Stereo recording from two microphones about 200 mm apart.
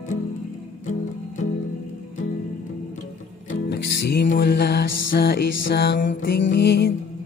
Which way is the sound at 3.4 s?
50° left (ahead or behind).